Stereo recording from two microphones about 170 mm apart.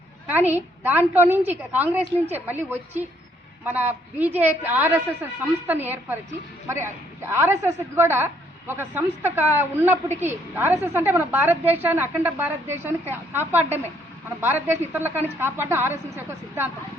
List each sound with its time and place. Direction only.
0.3 s a woman's voice: 10° right (ahead or behind)